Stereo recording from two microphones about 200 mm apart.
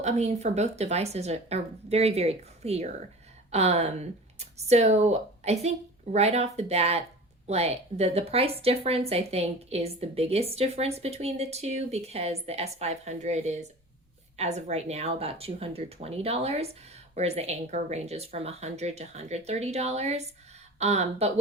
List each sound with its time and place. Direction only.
0.0 s speech: 35° right (ahead or behind)